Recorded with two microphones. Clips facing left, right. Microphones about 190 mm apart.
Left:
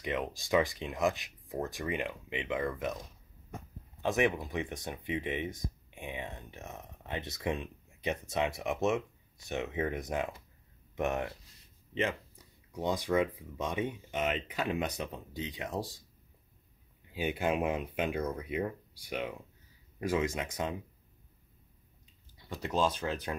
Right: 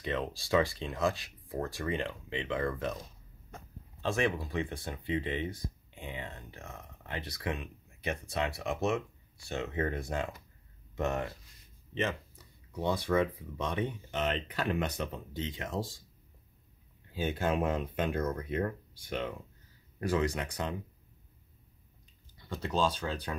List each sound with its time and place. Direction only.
0.0 s speech: 15° left (ahead or behind)
4.0 s speech: 20° left (ahead or behind)
17.1 s speech: 15° left (ahead or behind)
22.7 s speech: 5° left (ahead or behind)